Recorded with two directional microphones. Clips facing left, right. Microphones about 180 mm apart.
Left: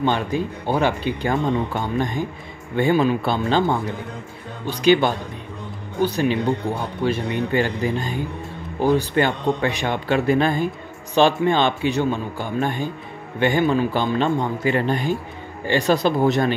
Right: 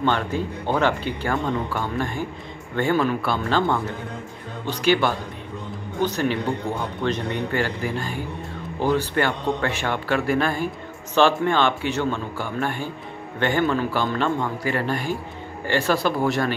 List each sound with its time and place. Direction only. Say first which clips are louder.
0.0 s speech: left 2 dB; 15° left (ahead or behind)